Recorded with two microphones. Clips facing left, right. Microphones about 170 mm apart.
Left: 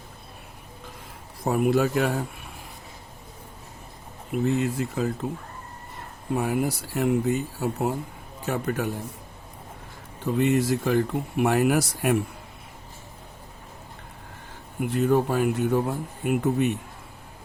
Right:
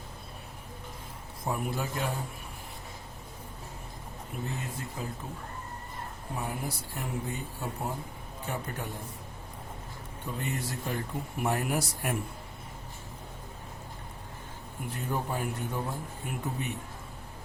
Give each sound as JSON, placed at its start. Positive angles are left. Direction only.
{"t": 1.5, "sound": "speech", "side_deg": 75}
{"t": 4.3, "sound": "speech", "side_deg": 80}
{"t": 6.3, "sound": "speech", "side_deg": 85}
{"t": 10.3, "sound": "speech", "side_deg": 90}
{"t": 14.8, "sound": "speech", "side_deg": 85}